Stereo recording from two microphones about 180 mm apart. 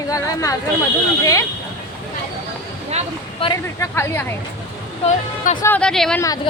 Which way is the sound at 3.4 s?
30° left (ahead or behind).